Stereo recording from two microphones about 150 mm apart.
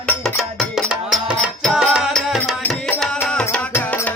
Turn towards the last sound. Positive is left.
turn(degrees=10)  # may be behind; listen again after turning